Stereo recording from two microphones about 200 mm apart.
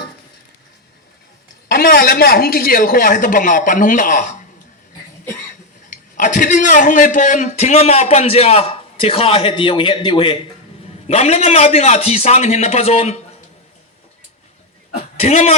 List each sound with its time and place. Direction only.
1.6 s a woman's voice: 45° left (ahead or behind)
5.9 s speech: 40° left (ahead or behind)
15.2 s speech: 30° left (ahead or behind)